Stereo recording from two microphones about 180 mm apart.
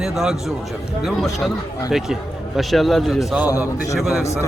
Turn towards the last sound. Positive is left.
turn(degrees=0)  # may be behind; listen again after turning